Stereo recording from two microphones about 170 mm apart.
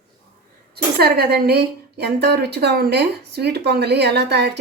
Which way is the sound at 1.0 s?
70° right (ahead or behind).